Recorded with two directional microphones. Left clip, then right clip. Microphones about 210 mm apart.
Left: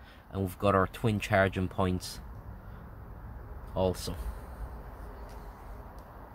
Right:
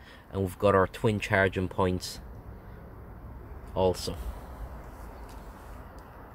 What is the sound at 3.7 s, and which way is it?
Speech, centre (ahead or behind).